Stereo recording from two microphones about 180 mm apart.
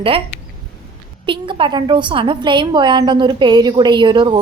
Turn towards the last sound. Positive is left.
turn(degrees=-25)  # may be behind; listen again after turning